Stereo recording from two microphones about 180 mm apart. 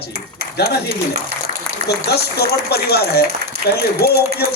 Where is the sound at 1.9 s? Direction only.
65° left (ahead or behind).